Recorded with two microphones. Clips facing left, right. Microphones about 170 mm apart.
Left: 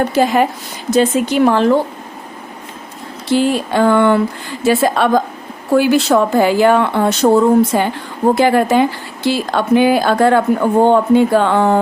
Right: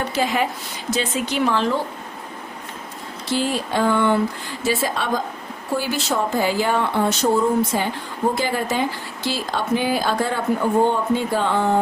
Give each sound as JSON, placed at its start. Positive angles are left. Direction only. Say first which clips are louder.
{"t": 0.0, "sound": "speech", "louder": "left 8 dB", "side_deg": 50}
{"t": 3.3, "sound": "speech", "louder": "left 8 dB", "side_deg": 65}